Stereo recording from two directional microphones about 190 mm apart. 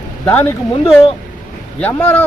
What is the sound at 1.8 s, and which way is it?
Speech, 10° left (ahead or behind).